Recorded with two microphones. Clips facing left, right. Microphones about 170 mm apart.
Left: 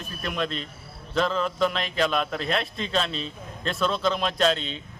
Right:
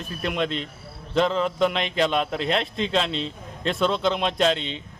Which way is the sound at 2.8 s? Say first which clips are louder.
Right 3 dB; 85° right.